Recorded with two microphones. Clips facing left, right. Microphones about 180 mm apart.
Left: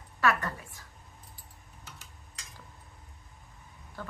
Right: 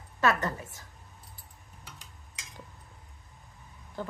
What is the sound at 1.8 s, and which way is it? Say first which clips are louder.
Tick-tock: even; 15° right (ahead or behind).